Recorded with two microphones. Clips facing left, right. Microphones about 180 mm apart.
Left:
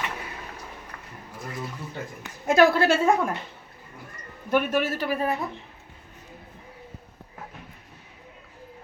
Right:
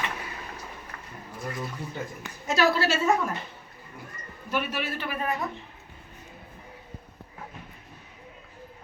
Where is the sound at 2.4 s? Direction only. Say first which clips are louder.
Left 5 dB; 55° left (ahead or behind).